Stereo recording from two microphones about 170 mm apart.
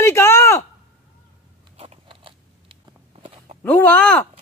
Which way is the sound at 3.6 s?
10° left (ahead or behind).